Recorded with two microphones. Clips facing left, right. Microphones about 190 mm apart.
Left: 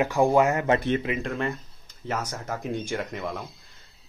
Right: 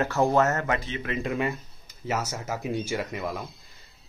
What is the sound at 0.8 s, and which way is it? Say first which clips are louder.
Speech: left 9 dB; 60° left (ahead or behind).